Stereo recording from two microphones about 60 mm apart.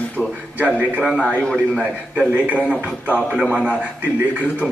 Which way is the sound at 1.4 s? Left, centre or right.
Centre.